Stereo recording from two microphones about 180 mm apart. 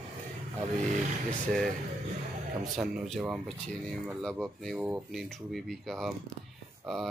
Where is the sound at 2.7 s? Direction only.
Centre (ahead or behind).